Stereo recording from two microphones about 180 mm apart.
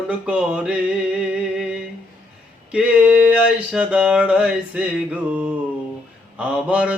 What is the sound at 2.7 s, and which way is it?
Mantra, 5° right (ahead or behind).